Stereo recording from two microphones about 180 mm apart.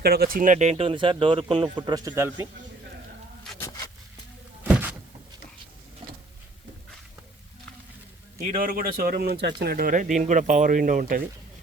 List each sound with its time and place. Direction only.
0.0 s speech: 60° right (ahead or behind); by 2.5 s 15° right (ahead or behind)
3.5 s a sound: centre (ahead or behind)
4.6 s thunk: 10° right (ahead or behind)
8.4 s speech: 45° right (ahead or behind)